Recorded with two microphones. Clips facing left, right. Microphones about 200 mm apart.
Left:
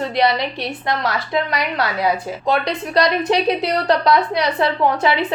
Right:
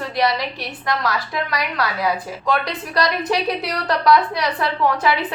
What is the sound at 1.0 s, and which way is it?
A woman's voice, 25° left (ahead or behind).